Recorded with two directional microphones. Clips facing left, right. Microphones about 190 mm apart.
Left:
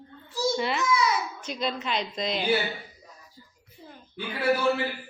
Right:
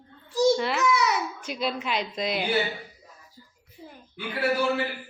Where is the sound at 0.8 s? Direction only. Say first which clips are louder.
Right 2 dB; 70° right (ahead or behind).